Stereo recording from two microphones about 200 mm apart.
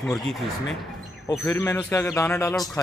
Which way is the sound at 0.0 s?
Centre (ahead or behind).